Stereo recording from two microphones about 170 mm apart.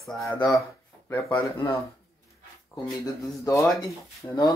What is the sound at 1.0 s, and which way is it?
Speech, 10° left (ahead or behind).